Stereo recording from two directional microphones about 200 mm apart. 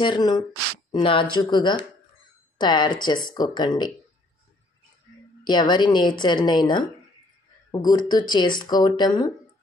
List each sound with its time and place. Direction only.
0.0 s speech: 20° left (ahead or behind)
5.4 s speech: 20° left (ahead or behind)